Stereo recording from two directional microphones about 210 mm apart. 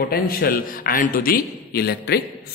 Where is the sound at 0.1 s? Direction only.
45° left (ahead or behind).